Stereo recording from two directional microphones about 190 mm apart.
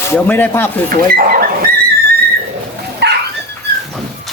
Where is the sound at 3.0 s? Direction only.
65° right (ahead or behind).